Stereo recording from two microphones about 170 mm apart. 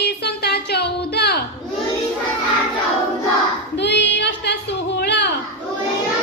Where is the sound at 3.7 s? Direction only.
90° left.